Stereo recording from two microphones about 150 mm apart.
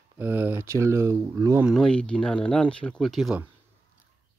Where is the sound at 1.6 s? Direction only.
Centre (ahead or behind).